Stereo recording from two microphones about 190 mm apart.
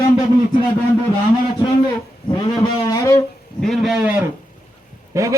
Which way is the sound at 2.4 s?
20° left (ahead or behind).